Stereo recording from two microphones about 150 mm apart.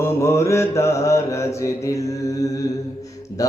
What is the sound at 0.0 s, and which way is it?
Mantra, 20° left (ahead or behind).